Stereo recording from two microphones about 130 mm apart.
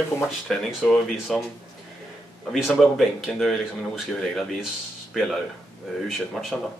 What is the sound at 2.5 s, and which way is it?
Speech, centre (ahead or behind).